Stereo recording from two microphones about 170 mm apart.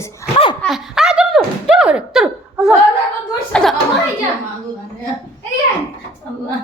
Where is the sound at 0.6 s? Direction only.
Centre (ahead or behind).